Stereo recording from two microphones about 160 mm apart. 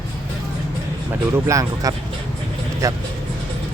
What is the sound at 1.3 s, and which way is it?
Speech, 20° right (ahead or behind).